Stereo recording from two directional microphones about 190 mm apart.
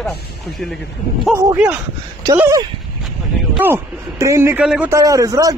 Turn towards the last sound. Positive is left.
turn(degrees=-20)  # may be behind; listen again after turning